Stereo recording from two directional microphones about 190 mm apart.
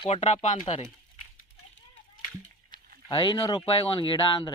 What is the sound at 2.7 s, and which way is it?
Speech, 25° left (ahead or behind).